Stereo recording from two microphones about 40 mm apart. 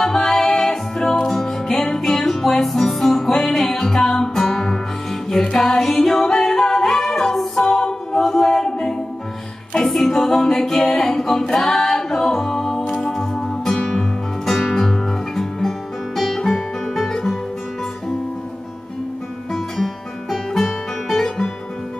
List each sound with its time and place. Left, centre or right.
0.0 s music: centre
9.8 s a capella: centre
12.8 s music: left
13.1 s music: centre
19.5 s music: centre